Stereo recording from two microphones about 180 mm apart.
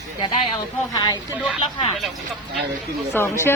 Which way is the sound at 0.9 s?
20° left (ahead or behind).